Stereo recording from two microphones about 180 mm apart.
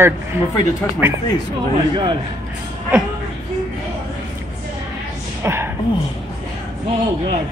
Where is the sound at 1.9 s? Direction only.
25° right (ahead or behind).